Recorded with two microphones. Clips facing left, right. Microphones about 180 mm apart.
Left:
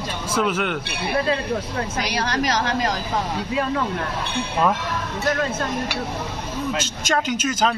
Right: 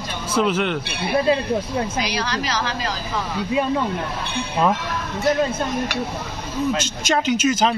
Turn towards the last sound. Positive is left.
turn(degrees=-10)  # may be behind; listen again after turning